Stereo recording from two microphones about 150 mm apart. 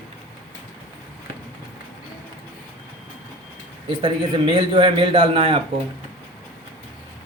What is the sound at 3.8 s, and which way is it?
A man's voice, 35° right (ahead or behind).